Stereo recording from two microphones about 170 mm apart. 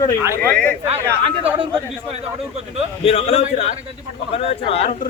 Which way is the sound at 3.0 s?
35° left (ahead or behind).